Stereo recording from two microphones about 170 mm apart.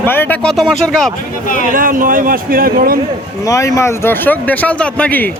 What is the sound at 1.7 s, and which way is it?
Speech, 55° right (ahead or behind).